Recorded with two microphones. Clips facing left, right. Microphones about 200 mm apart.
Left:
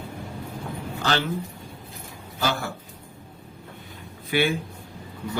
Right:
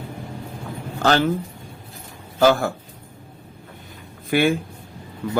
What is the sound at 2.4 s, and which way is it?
Speech, 45° right (ahead or behind).